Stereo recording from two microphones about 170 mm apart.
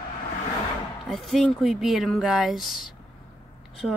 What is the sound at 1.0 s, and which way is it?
Speech, centre (ahead or behind).